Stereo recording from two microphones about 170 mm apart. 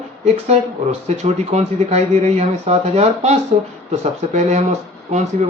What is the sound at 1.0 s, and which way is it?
Speech, 40° right (ahead or behind).